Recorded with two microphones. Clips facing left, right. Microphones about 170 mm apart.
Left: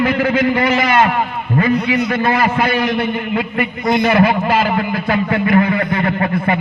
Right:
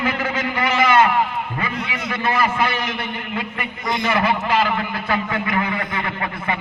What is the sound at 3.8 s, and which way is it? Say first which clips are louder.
A man's voice: left 7 dB; 45° left (ahead or behind).